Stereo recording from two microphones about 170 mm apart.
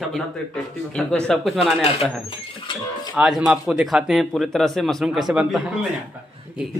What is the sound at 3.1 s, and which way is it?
Speech, 5° right (ahead or behind).